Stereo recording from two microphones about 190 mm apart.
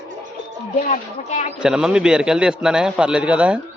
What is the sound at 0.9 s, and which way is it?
Speech, 40° left (ahead or behind).